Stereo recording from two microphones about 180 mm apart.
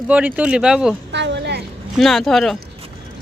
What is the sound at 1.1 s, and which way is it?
Speech, 75° right (ahead or behind).